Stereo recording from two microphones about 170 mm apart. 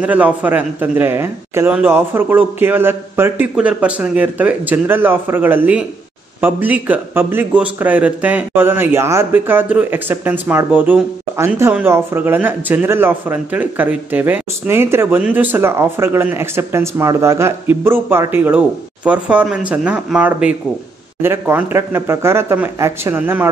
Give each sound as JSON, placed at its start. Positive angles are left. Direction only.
{"t": 0.0, "sound": "speech", "side_deg": -10}